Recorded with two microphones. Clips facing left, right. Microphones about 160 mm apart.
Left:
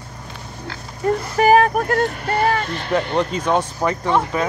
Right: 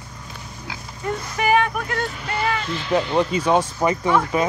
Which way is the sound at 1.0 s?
40° left (ahead or behind).